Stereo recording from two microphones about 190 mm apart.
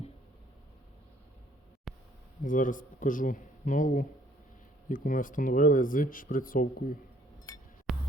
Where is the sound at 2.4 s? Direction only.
45° left (ahead or behind).